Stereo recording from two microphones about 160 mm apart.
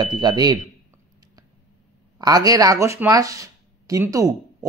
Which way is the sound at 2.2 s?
25° right (ahead or behind).